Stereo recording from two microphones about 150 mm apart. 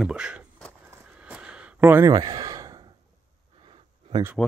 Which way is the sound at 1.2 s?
5° right (ahead or behind).